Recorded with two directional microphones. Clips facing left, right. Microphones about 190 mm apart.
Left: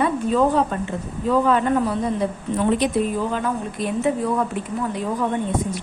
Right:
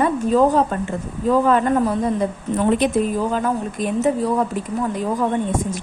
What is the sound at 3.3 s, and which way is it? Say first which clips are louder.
A woman's voice: right 3 dB; 45° right (ahead or behind).